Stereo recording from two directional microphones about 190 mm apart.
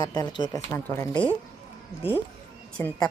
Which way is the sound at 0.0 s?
20° left (ahead or behind).